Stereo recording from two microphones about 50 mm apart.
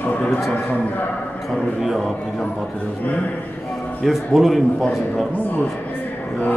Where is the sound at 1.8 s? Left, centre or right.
Centre.